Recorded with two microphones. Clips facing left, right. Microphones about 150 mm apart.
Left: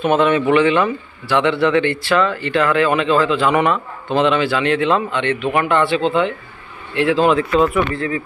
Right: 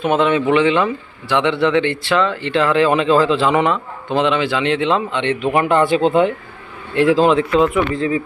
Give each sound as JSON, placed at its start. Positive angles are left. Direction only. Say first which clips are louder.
{"t": 0.0, "sound": "speech", "louder": "left 1 dB", "side_deg": -15}
{"t": 5.6, "sound": "speech", "louder": "right 3 dB", "side_deg": -40}
{"t": 7.6, "sound": "speech", "louder": "right 1 dB", "side_deg": -20}